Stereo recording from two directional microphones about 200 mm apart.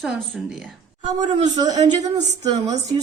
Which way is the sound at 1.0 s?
20° right (ahead or behind).